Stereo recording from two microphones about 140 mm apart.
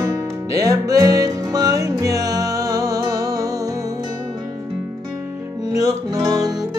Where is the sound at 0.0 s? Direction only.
25° right (ahead or behind).